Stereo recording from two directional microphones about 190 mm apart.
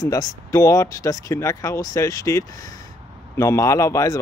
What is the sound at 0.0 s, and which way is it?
Speech, 20° left (ahead or behind).